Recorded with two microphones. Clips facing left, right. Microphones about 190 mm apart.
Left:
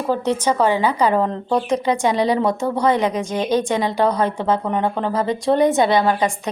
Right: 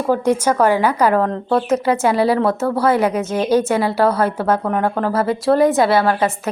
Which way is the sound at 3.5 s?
5° right (ahead or behind).